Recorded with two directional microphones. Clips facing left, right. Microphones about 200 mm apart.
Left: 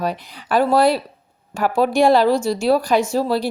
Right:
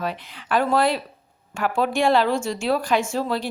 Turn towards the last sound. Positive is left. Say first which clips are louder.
# left 5 dB
turn(degrees=35)  # may be behind; listen again after turning